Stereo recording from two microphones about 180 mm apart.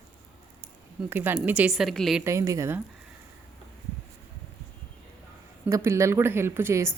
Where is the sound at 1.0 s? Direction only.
10° right (ahead or behind).